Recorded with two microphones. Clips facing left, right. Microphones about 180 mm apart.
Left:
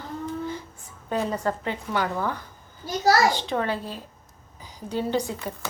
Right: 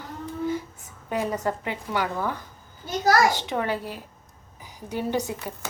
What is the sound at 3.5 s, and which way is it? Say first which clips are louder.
A woman's voice: even; 15° right (ahead or behind).